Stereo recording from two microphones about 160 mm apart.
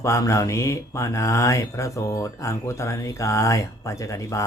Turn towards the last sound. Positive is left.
turn(degrees=20)  # may be behind; listen again after turning